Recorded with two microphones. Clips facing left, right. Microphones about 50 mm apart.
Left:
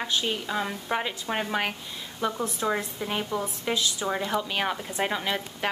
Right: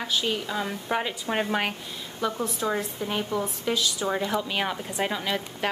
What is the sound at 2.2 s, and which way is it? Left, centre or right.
A woman's voice, centre.